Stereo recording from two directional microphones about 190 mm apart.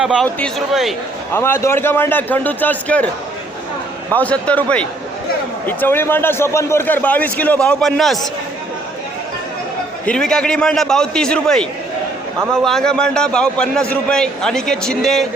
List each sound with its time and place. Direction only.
0.0 s a man's voice: 5° right (ahead or behind)
1.3 s a man's voice: 10° left (ahead or behind)
4.1 s a man's voice: 5° left (ahead or behind)
10.1 s a man's voice: 5° left (ahead or behind)